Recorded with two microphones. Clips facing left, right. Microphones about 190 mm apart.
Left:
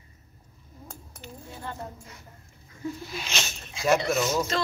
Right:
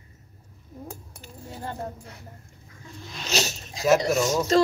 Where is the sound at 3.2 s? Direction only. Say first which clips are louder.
Right 6 dB; 40° right (ahead or behind).